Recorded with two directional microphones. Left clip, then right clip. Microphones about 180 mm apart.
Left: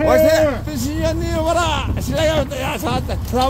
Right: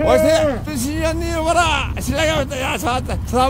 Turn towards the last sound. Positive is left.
turn(degrees=-5)  # may be behind; listen again after turning